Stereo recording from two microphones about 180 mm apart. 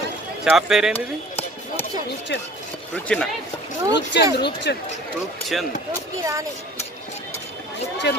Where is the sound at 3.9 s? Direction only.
75° left (ahead or behind).